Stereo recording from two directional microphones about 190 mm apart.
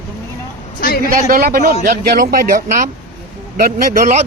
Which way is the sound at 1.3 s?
50° right (ahead or behind).